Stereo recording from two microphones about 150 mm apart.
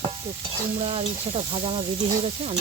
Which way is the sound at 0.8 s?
40° right (ahead or behind).